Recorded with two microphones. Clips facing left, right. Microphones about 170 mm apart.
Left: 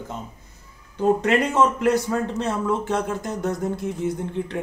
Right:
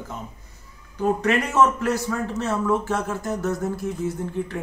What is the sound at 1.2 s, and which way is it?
Speech, 20° left (ahead or behind).